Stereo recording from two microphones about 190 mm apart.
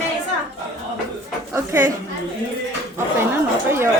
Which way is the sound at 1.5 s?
15° right (ahead or behind).